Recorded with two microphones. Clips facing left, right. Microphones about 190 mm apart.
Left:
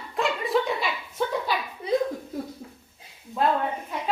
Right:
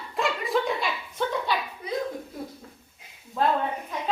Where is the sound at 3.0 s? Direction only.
30° left (ahead or behind).